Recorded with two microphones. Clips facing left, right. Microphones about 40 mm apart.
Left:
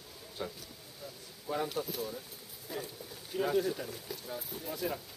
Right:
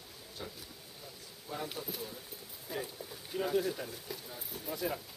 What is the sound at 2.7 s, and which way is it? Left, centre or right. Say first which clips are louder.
A man's voice: right 1 dB; centre.